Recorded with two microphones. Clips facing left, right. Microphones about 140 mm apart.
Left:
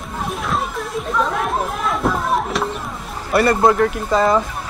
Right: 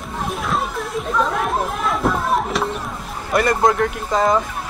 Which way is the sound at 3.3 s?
5° left (ahead or behind).